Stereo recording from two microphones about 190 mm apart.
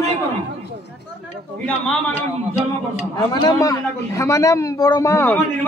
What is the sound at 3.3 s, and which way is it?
A man's voice, 20° left (ahead or behind).